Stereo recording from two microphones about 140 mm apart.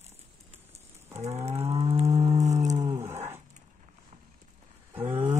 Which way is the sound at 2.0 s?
25° right (ahead or behind).